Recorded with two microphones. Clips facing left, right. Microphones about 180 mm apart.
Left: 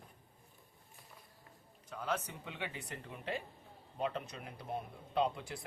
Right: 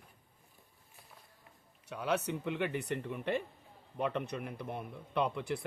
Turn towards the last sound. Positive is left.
turn(degrees=-65)  # may be behind; listen again after turning